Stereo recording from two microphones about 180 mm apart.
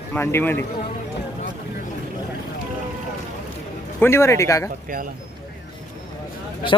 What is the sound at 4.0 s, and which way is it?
Speech, 15° left (ahead or behind).